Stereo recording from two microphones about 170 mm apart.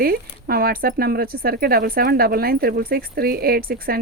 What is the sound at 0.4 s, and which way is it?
Speech, 60° right (ahead or behind).